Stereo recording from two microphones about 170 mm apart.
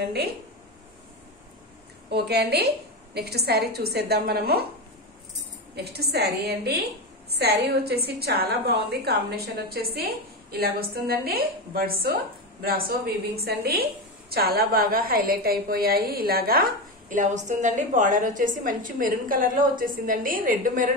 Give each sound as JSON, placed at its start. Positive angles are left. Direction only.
{"t": 2.0, "sound": "a woman's voice", "side_deg": -75}
{"t": 5.8, "sound": "a woman's voice", "side_deg": -70}